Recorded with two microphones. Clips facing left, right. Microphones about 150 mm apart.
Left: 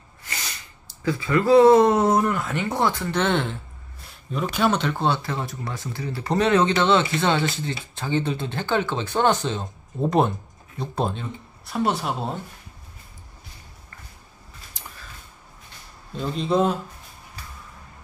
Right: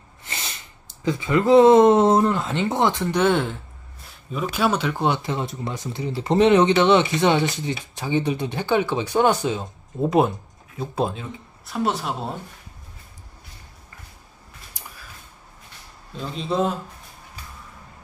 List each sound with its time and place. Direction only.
0.2 s snort: 25° right (ahead or behind)
1.0 s speech: 20° right (ahead or behind); by 12.4 s centre (ahead or behind)
16.2 s speech: centre (ahead or behind)